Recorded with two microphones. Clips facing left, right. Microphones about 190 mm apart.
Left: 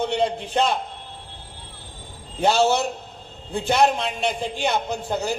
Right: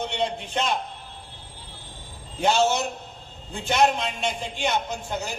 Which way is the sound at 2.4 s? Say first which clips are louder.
Left 3 dB; 35° left (ahead or behind).